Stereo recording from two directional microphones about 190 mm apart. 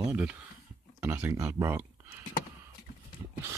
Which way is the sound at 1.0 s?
10° right (ahead or behind).